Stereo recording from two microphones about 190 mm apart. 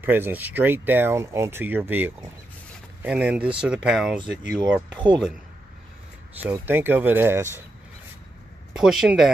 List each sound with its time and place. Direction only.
0.0 s speech: 10° right (ahead or behind)
4.9 s speech: 25° right (ahead or behind)
6.4 s speech: 10° right (ahead or behind)
8.7 s speech: centre (ahead or behind)